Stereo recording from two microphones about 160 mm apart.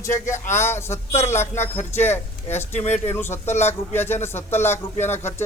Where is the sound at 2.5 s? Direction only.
45° left (ahead or behind).